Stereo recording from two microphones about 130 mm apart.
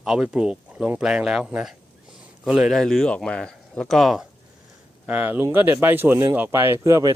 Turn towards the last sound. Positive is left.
turn(degrees=-25)  # may be behind; listen again after turning